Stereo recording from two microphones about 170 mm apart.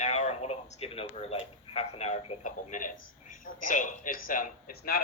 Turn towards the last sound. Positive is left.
turn(degrees=60)  # may be behind; listen again after turning